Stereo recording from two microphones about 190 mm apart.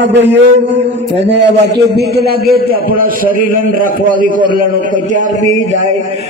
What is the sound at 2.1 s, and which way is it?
A man's voice, 55° right (ahead or behind).